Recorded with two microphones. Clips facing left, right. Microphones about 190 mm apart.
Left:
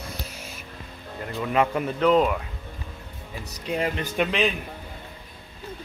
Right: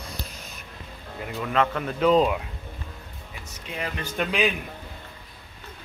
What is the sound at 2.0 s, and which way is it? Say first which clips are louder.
Speech: even; 15° right (ahead or behind).